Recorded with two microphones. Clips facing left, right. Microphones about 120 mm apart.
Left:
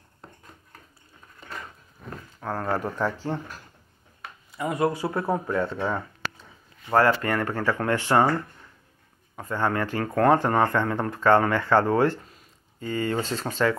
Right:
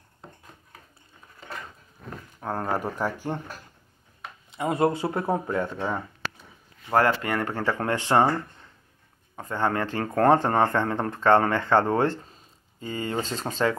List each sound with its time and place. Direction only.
2.4 s speech: 15° right (ahead or behind)
4.5 s speech: 30° right (ahead or behind)
5.6 s speech: 15° right (ahead or behind)
6.9 s speech: 25° right (ahead or behind)
9.4 s speech: 30° right (ahead or behind)